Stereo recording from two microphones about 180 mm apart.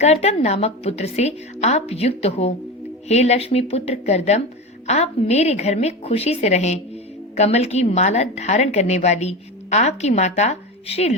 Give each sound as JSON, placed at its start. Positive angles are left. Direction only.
{"t": 0.0, "sound": "a woman's voice", "side_deg": 35}